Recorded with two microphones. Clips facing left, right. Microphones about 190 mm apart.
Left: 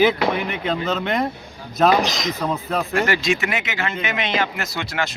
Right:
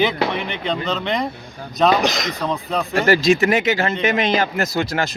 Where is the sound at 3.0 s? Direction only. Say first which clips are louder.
Right 7 dB; 35° right (ahead or behind).